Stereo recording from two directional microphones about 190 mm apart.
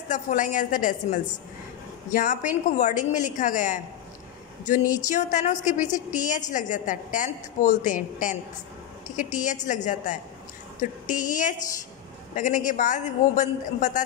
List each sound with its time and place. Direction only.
0.1 s a man's voice: 40° left (ahead or behind)